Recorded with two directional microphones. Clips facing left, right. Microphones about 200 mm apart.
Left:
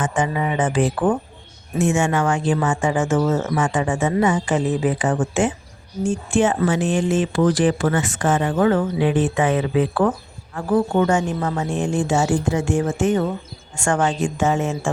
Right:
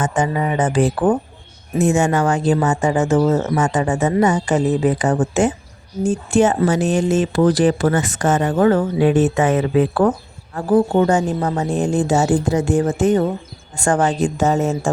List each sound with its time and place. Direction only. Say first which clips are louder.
0.0 s speech: right 2 dB; 40° right (ahead or behind)
10.5 s speech: right 4 dB; 30° right (ahead or behind)